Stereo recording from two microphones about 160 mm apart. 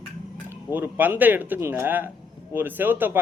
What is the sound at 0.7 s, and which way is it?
Speech, 10° right (ahead or behind).